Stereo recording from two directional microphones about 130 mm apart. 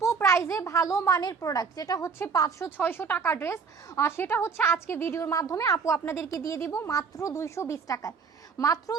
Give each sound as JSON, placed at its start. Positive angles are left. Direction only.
{"t": 0.0, "sound": "a woman's voice", "side_deg": 20}
{"t": 2.6, "sound": "a woman's voice", "side_deg": 15}